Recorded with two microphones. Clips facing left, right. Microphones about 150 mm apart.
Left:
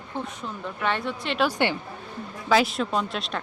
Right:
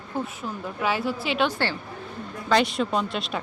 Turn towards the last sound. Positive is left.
turn(degrees=0)  # may be behind; listen again after turning